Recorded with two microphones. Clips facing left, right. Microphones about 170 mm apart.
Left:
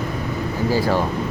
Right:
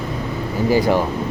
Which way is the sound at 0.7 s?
15° right (ahead or behind).